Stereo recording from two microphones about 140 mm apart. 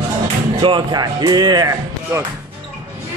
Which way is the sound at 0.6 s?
35° right (ahead or behind).